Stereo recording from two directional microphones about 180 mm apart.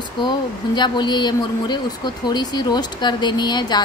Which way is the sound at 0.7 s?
25° left (ahead or behind).